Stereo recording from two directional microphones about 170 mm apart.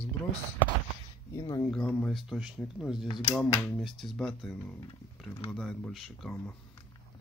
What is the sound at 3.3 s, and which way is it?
Speech, 5° left (ahead or behind).